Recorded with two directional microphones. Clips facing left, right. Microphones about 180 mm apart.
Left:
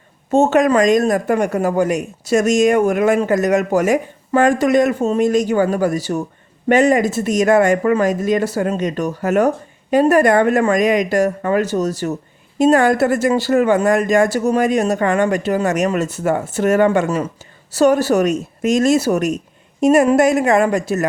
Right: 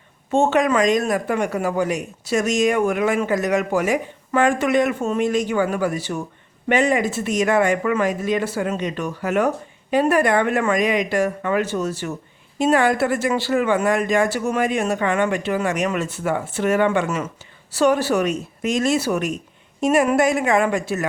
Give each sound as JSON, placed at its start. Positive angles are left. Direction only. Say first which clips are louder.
{"t": 0.3, "sound": "speech", "louder": "left 4 dB", "side_deg": 45}